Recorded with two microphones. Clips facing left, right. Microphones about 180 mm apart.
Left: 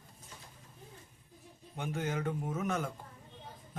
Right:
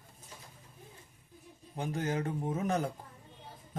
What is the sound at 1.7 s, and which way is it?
Speech, 35° right (ahead or behind).